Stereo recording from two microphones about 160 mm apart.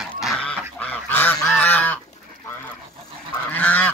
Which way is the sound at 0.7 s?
10° left (ahead or behind).